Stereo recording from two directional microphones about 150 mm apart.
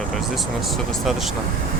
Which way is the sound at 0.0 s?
Centre (ahead or behind).